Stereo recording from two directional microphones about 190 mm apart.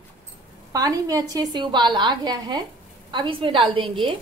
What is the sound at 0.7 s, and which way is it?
A woman's voice, 20° right (ahead or behind).